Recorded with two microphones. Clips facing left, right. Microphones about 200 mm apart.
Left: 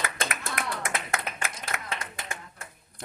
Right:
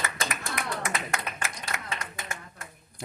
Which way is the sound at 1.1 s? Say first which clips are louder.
Left 1 dB; 55° left (ahead or behind).